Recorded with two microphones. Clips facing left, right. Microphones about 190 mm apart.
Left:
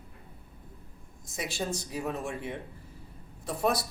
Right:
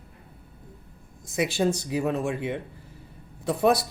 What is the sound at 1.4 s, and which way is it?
Speech, 75° right (ahead or behind).